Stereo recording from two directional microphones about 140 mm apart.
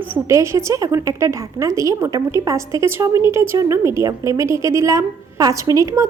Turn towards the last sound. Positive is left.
turn(degrees=-20)  # may be behind; listen again after turning